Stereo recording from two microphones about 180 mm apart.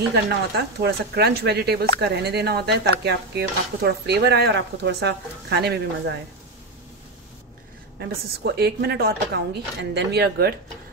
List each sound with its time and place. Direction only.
0.8 s a woman's voice: 65° right (ahead or behind)
8.0 s a woman's voice: 65° right (ahead or behind)